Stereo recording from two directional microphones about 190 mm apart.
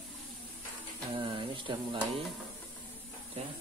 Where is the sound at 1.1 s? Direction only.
25° right (ahead or behind).